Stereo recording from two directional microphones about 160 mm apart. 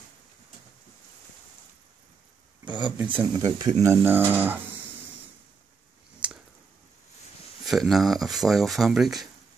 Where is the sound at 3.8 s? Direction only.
15° right (ahead or behind).